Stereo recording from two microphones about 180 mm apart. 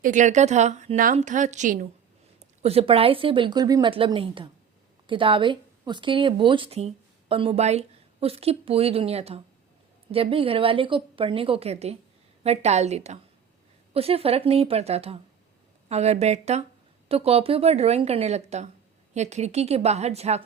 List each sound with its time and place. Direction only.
0.0 s a woman's voice: 45° right (ahead or behind)